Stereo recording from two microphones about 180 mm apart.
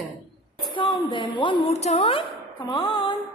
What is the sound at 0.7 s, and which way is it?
A woman's voice, 25° left (ahead or behind).